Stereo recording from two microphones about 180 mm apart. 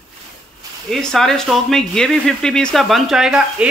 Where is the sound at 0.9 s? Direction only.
Centre (ahead or behind).